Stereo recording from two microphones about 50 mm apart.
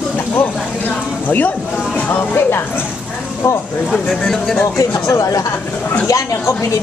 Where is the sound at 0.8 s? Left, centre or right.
Left.